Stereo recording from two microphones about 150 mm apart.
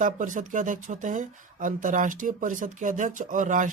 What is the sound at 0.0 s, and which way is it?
Speech, 60° right (ahead or behind).